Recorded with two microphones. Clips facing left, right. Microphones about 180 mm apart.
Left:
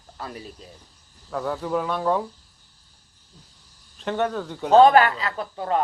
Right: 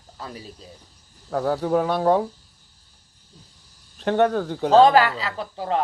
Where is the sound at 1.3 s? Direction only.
45° right (ahead or behind).